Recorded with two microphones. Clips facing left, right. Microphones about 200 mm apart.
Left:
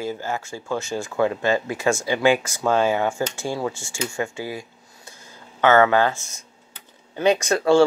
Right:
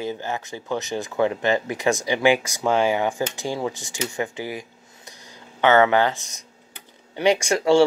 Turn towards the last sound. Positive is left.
turn(degrees=-15)  # may be behind; listen again after turning